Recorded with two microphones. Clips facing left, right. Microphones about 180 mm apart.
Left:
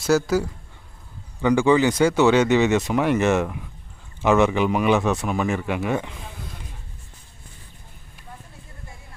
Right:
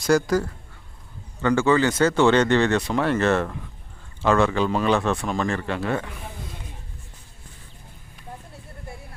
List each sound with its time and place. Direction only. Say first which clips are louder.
0.0 s speech: even; 5° left (ahead or behind)